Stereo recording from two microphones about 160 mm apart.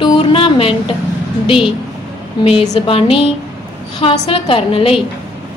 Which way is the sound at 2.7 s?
35° left (ahead or behind).